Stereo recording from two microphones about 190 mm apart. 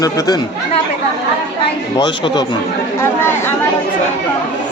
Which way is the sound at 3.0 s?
15° left (ahead or behind).